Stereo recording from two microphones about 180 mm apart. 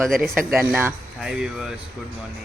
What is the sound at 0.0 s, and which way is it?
Speech, centre (ahead or behind).